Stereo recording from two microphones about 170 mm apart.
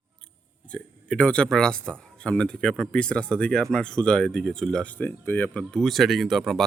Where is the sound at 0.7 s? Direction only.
5° left (ahead or behind).